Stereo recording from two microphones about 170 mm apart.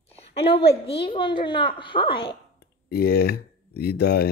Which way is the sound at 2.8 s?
65° left (ahead or behind).